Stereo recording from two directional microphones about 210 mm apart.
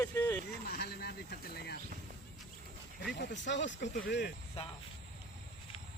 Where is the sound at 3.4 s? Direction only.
60° left (ahead or behind).